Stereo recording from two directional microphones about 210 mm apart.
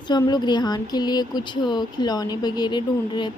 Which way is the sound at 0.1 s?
20° left (ahead or behind).